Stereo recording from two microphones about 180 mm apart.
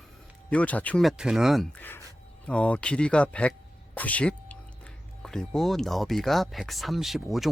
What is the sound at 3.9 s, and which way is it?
Music, 10° left (ahead or behind).